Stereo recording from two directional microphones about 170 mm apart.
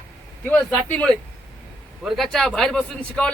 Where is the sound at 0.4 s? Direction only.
10° left (ahead or behind).